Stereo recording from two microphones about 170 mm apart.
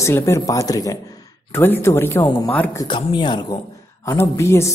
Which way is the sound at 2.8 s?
30° left (ahead or behind).